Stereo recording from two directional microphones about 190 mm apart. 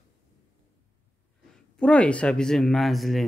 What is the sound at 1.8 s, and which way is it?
Speech, 5° left (ahead or behind).